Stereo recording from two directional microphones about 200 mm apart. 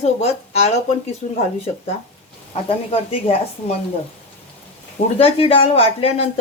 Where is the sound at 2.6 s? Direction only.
30° left (ahead or behind).